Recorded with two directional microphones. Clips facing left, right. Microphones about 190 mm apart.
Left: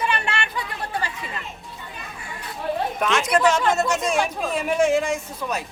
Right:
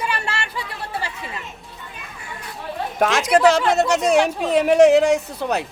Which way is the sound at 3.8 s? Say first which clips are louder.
Right 5 dB; 70° right (ahead or behind).